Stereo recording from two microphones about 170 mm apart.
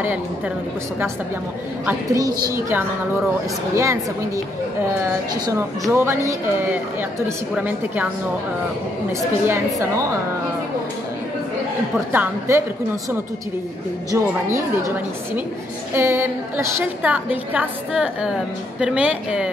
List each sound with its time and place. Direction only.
2.1 s a woman's voice: 20° right (ahead or behind)
5.5 s a woman's voice: 15° right (ahead or behind)
9.5 s a woman's voice: 15° right (ahead or behind)
12.1 s a woman's voice: 15° right (ahead or behind)
14.1 s a woman's voice: 15° right (ahead or behind)
15.9 s a woman's voice: 15° right (ahead or behind)